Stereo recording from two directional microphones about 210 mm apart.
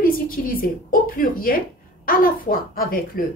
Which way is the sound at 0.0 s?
40° left (ahead or behind).